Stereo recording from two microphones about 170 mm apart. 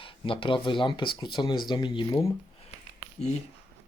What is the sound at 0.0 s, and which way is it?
Speech, 30° left (ahead or behind).